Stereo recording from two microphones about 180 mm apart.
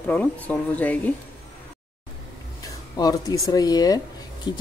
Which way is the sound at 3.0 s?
20° left (ahead or behind).